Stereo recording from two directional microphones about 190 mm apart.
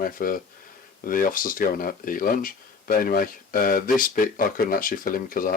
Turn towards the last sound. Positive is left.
turn(degrees=50)  # may be behind; listen again after turning